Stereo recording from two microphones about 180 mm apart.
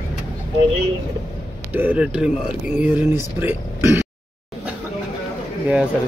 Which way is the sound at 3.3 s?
10° right (ahead or behind).